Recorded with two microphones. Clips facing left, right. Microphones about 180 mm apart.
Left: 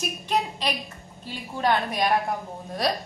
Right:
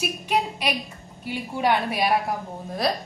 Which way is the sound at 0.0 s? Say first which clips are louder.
Right 2 dB; 10° right (ahead or behind).